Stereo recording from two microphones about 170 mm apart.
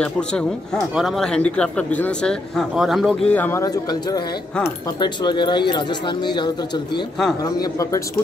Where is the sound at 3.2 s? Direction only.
10° left (ahead or behind).